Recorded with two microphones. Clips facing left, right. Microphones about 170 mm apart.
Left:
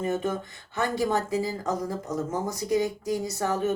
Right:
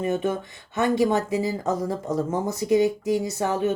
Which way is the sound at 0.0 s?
20° right (ahead or behind).